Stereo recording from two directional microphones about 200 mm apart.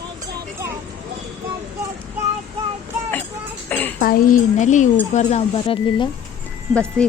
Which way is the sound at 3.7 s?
10° left (ahead or behind).